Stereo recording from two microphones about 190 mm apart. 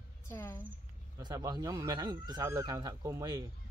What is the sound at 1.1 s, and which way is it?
Speech, 20° right (ahead or behind).